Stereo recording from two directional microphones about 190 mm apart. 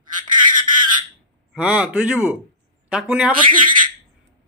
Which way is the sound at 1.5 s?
5° right (ahead or behind).